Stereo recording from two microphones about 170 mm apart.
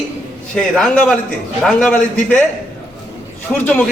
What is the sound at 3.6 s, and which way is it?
Speech, 10° left (ahead or behind).